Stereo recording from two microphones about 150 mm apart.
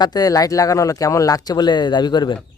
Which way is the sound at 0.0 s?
25° left (ahead or behind).